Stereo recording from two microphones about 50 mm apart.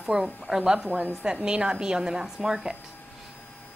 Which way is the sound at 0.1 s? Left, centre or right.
Centre.